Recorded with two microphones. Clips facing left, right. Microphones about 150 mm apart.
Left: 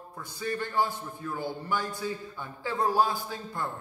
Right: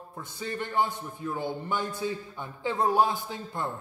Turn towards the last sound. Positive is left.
turn(degrees=-20)  # may be behind; listen again after turning